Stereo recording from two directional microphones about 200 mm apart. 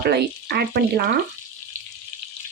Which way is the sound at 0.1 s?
55° right (ahead or behind).